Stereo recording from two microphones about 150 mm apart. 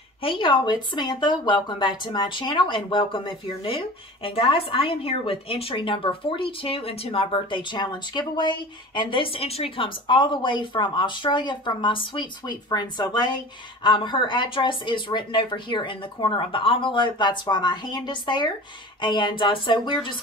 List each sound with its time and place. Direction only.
0.2 s speech: 35° left (ahead or behind)